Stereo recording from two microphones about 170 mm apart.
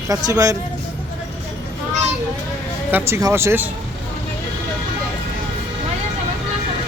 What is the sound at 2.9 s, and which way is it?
Speech, 15° right (ahead or behind).